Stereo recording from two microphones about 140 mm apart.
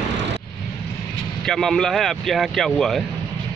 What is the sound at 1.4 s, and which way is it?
Speech, 5° left (ahead or behind).